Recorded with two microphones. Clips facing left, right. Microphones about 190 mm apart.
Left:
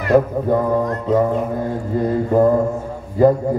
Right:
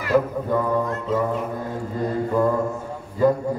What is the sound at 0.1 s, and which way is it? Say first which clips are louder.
Mantra: left 5 dB; 40° left (ahead or behind).